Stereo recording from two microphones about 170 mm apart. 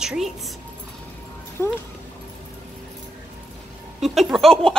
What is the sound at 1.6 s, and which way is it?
Speech, 15° left (ahead or behind).